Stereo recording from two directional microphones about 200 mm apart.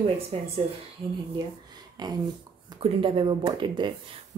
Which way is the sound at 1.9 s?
20° right (ahead or behind).